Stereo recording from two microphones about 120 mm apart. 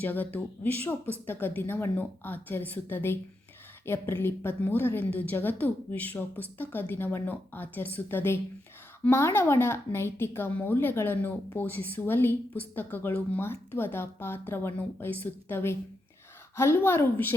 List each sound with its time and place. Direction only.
0.0 s a woman's voice: 15° left (ahead or behind)